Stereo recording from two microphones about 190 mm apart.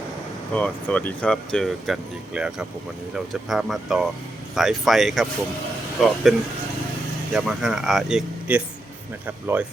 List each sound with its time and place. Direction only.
0.5 s speech: 5° left (ahead or behind)
7.3 s speech: centre (ahead or behind)